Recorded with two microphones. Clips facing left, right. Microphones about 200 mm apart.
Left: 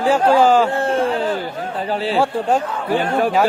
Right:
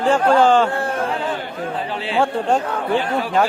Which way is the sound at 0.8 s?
25° left (ahead or behind).